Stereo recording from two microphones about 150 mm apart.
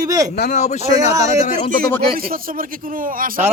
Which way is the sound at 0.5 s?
50° left (ahead or behind).